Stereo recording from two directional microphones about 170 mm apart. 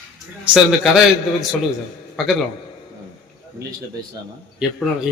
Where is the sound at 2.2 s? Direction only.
Centre (ahead or behind).